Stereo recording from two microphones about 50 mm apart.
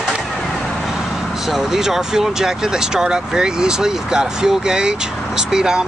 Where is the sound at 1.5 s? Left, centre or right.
Centre.